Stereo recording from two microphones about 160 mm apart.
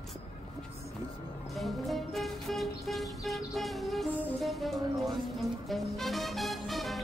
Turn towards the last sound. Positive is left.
turn(degrees=0)  # may be behind; listen again after turning